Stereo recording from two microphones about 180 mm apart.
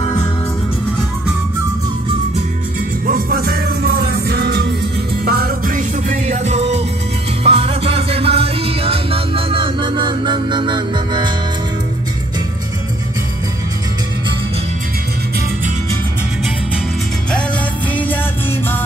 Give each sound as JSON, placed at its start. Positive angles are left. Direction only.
{"t": 3.1, "sound": "music", "side_deg": -55}
{"t": 17.9, "sound": "music", "side_deg": 10}